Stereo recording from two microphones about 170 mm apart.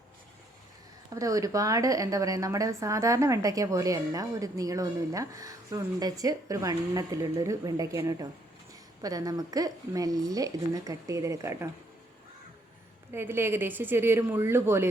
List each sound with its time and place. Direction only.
1.1 s a woman's voice: 20° right (ahead or behind)
13.1 s speech: 15° right (ahead or behind)